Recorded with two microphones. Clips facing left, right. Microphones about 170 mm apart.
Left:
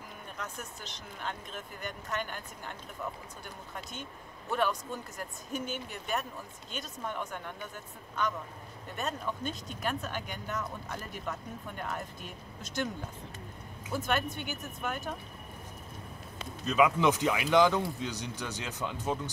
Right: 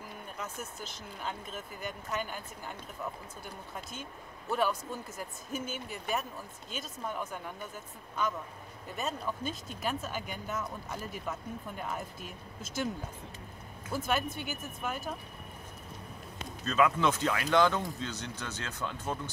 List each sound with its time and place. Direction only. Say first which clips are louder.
0.4 s speech: right 1 dB; centre (ahead or behind)
4.5 s speech: even; 5° right (ahead or behind)
14.0 s speech: even; centre (ahead or behind)
16.6 s speech: left 2 dB; 15° left (ahead or behind)